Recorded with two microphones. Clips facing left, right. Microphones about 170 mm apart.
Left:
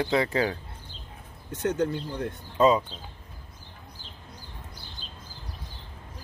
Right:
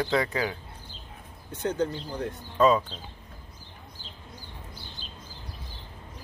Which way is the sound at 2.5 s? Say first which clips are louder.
Even; 20° left (ahead or behind).